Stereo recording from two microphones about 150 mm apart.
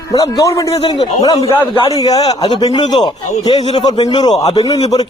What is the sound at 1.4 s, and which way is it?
A man's voice, 35° left (ahead or behind).